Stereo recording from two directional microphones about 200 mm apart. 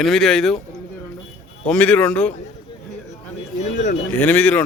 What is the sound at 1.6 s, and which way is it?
Speech, 5° left (ahead or behind).